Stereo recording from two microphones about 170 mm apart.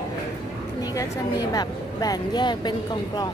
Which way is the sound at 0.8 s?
20° left (ahead or behind).